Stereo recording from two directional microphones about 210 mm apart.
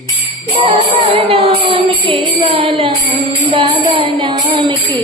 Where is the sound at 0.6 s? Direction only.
25° right (ahead or behind).